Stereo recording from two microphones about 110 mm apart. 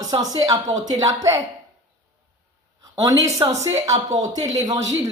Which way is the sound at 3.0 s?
35° right (ahead or behind).